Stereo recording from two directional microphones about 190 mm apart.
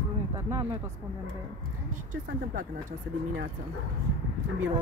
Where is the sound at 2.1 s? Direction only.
45° right (ahead or behind).